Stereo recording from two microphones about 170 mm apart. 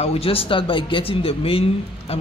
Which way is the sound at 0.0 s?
35° left (ahead or behind).